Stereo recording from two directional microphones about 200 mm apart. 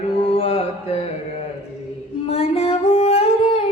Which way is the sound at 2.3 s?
30° left (ahead or behind).